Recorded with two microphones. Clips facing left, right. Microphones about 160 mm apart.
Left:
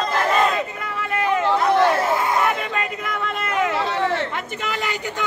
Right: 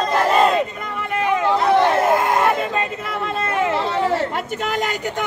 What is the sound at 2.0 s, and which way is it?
Crowd, 55° right (ahead or behind).